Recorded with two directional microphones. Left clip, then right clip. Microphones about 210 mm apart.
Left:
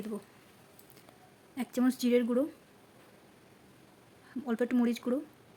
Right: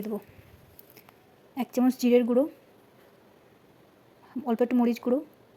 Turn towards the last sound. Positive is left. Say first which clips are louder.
# right 6 dB
turn(degrees=-15)  # may be behind; listen again after turning